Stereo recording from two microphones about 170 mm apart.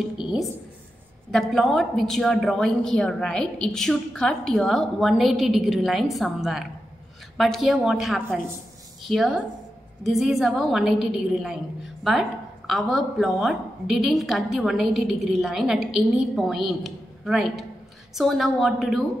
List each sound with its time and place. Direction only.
0.2 s a woman's voice: centre (ahead or behind)